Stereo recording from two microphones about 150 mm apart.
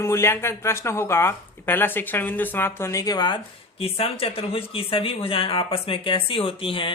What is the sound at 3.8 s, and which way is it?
Speech, 40° left (ahead or behind).